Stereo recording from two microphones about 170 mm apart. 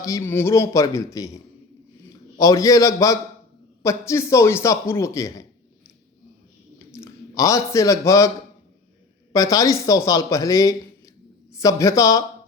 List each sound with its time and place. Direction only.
0.0 s a man's voice: 20° left (ahead or behind)
6.7 s a man's voice: 15° left (ahead or behind)
9.3 s a man's voice: 20° left (ahead or behind)